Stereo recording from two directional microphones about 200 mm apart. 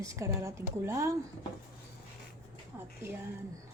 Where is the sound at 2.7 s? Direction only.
10° right (ahead or behind).